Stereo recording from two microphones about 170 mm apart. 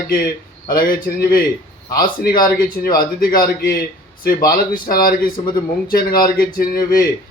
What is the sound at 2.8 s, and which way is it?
Speech, 55° left (ahead or behind).